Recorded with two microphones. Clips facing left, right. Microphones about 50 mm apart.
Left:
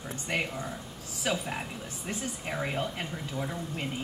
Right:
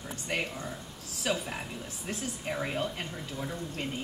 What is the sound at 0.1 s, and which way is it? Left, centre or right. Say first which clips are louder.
Speech: left 2 dB; centre.